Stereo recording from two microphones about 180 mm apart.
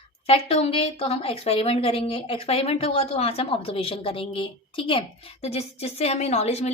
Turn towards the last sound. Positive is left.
turn(degrees=35)  # may be behind; listen again after turning